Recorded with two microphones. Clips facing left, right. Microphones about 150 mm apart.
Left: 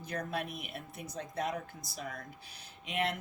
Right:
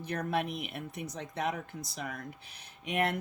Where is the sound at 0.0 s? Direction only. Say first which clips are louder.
Right 5 dB; 60° right (ahead or behind).